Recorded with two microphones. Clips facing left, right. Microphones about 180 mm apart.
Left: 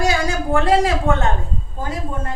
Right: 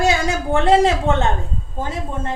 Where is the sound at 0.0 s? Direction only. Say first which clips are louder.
Right 1 dB; 25° right (ahead or behind).